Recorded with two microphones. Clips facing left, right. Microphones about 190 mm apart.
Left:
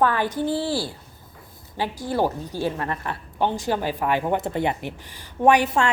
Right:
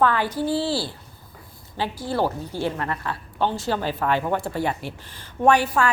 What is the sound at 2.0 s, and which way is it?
A woman's voice, 15° left (ahead or behind).